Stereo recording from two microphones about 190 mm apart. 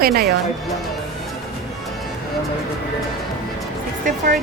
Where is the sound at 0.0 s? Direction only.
55° right (ahead or behind).